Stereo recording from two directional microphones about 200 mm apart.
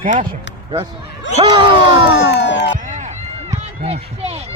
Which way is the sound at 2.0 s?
60° left (ahead or behind).